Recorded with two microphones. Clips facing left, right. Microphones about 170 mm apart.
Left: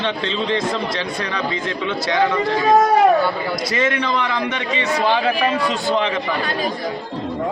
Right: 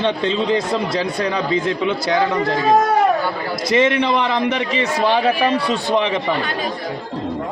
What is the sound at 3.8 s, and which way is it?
Speech, 30° right (ahead or behind).